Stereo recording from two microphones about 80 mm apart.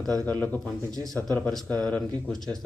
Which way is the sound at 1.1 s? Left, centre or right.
Centre.